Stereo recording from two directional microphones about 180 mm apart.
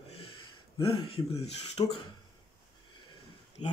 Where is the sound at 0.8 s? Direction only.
30° left (ahead or behind).